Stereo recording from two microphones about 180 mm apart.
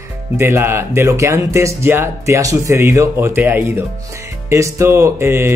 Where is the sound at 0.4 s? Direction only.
15° right (ahead or behind).